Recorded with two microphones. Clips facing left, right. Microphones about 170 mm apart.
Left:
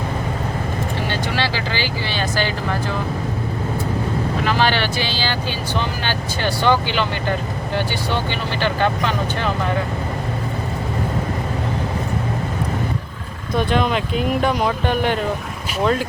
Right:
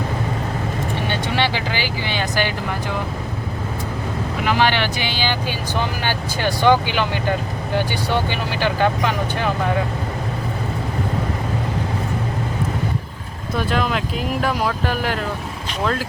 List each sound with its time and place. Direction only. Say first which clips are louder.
1.4 s speech: right 1 dB; 15° right (ahead or behind)
4.4 s speech: right 2 dB; 15° right (ahead or behind)
8.1 s speech: right 3 dB; 10° right (ahead or behind)
13.6 s speech: left 2 dB; 5° right (ahead or behind)